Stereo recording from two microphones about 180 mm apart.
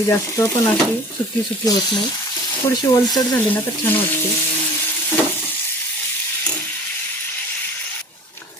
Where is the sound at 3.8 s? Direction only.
10° left (ahead or behind).